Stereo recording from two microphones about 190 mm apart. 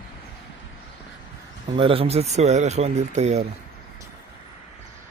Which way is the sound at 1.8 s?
30° right (ahead or behind).